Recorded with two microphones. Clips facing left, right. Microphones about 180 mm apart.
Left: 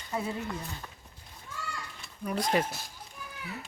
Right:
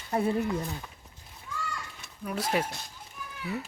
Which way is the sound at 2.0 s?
5° right (ahead or behind).